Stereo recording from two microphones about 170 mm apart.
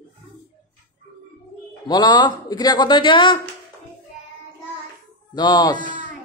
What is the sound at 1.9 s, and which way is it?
Speech, 25° left (ahead or behind).